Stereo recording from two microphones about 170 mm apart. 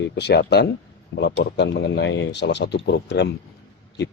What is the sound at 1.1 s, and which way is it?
Speech, 85° left.